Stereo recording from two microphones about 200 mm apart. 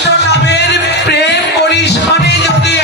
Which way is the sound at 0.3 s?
55° left (ahead or behind).